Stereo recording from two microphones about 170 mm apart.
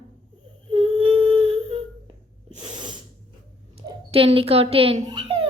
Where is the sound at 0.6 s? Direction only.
30° right (ahead or behind).